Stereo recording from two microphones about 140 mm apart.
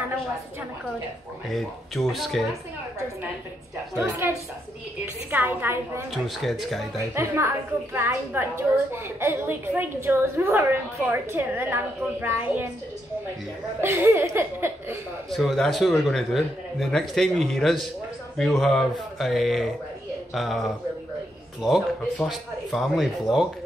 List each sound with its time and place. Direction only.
1.5 s speech: centre (ahead or behind)
3.9 s a woman's voice: 10° right (ahead or behind)
5.3 s a woman's voice: 15° right (ahead or behind)
6.1 s speech: centre (ahead or behind)
7.2 s a woman's voice: 20° right (ahead or behind)
13.7 s a woman's voice: 15° right (ahead or behind)
15.3 s speech: centre (ahead or behind)